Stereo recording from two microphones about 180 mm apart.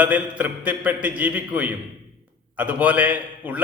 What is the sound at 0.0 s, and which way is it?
Mantra, 10° right (ahead or behind).